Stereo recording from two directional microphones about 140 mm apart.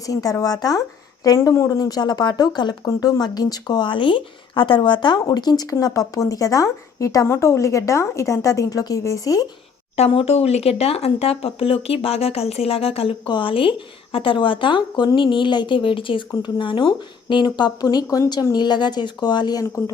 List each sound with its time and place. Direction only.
0.0 s a woman's voice: 25° left (ahead or behind)
9.9 s speech: 45° left (ahead or behind); by 19.6 s 30° left (ahead or behind)